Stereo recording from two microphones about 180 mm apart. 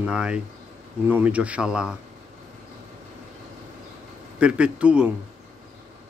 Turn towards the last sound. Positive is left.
turn(degrees=-5)  # may be behind; listen again after turning